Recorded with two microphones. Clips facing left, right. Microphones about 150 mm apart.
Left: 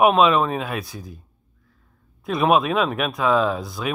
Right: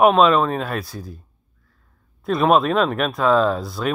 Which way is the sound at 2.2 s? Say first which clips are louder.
Right 2 dB; 5° left (ahead or behind).